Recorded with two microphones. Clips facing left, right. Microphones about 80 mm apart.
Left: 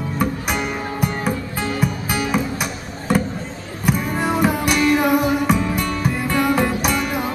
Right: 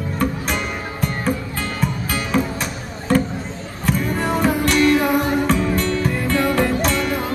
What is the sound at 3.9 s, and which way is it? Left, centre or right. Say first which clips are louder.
Music: even; centre.